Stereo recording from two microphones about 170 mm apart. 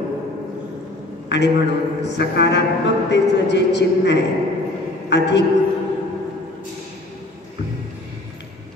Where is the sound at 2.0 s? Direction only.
90° left.